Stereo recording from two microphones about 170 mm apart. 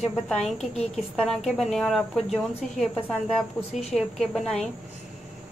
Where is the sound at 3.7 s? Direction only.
40° left (ahead or behind).